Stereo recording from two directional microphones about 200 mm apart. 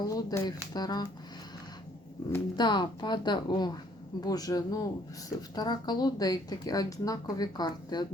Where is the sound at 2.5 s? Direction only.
20° left (ahead or behind).